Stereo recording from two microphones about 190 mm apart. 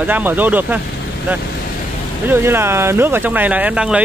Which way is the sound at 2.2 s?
10° right (ahead or behind).